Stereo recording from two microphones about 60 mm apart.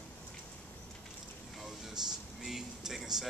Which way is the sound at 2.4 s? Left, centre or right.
Centre.